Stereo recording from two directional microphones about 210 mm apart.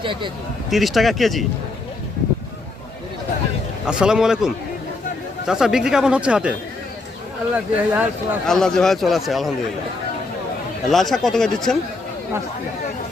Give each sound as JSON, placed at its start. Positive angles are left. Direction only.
{"t": 0.0, "sound": "speech", "side_deg": -25}
{"t": 0.7, "sound": "speech", "side_deg": 0}
{"t": 3.8, "sound": "speech", "side_deg": -5}
{"t": 7.5, "sound": "speech", "side_deg": -10}
{"t": 8.4, "sound": "speech", "side_deg": 0}
{"t": 10.8, "sound": "speech", "side_deg": 0}